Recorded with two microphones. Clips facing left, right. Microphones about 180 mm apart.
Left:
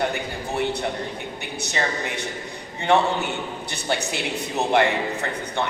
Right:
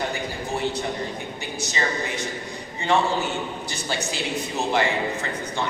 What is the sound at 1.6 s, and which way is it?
A man's voice, 65° left (ahead or behind).